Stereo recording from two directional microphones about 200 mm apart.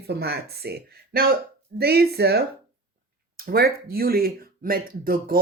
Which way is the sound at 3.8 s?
50° right (ahead or behind).